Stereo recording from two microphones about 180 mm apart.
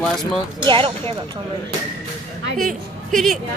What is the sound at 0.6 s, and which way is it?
Speech, 30° right (ahead or behind).